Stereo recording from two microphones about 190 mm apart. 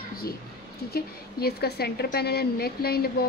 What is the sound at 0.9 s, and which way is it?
A woman's voice, 55° left (ahead or behind).